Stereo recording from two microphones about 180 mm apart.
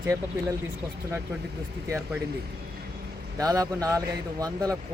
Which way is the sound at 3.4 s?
20° right (ahead or behind).